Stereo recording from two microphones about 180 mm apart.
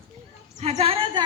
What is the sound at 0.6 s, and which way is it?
Speech, 35° right (ahead or behind).